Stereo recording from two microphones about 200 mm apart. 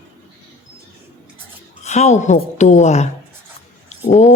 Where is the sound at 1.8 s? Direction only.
35° left (ahead or behind).